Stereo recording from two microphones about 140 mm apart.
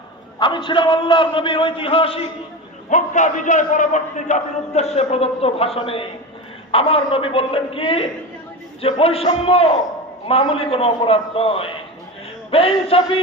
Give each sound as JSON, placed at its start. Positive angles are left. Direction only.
{"t": 0.3, "sound": "a man's voice", "side_deg": 35}
{"t": 2.9, "sound": "a man's voice", "side_deg": 60}